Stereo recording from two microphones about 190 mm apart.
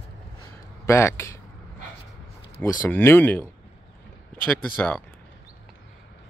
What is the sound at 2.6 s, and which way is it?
Speech, 10° left (ahead or behind).